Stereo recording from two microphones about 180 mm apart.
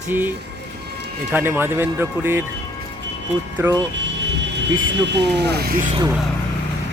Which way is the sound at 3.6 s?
10° right (ahead or behind).